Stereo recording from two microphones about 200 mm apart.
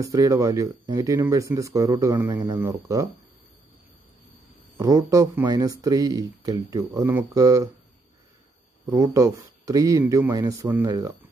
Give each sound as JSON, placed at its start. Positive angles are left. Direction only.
{"t": 0.0, "sound": "speech", "side_deg": -15}
{"t": 4.7, "sound": "speech", "side_deg": -15}
{"t": 8.8, "sound": "speech", "side_deg": -15}